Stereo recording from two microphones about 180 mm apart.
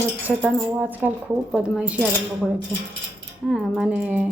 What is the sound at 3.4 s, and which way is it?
Speech, 5° right (ahead or behind).